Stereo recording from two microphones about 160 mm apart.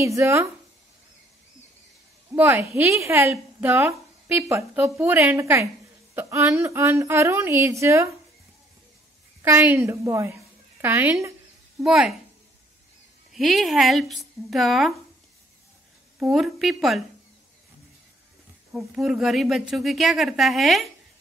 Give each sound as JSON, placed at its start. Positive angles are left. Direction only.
{"t": 0.0, "sound": "speech", "side_deg": -20}
{"t": 2.3, "sound": "a woman's voice", "side_deg": -15}
{"t": 9.4, "sound": "a woman's voice", "side_deg": -15}
{"t": 11.8, "sound": "speech", "side_deg": -5}
{"t": 13.3, "sound": "speech", "side_deg": 0}
{"t": 16.3, "sound": "speech", "side_deg": 0}
{"t": 18.7, "sound": "speech", "side_deg": 0}